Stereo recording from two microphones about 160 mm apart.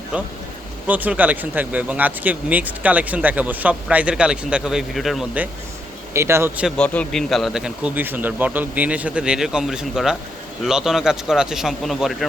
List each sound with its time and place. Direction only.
0.9 s speech: 10° right (ahead or behind)
6.1 s speech: 15° right (ahead or behind)
6.7 s speech: 5° left (ahead or behind)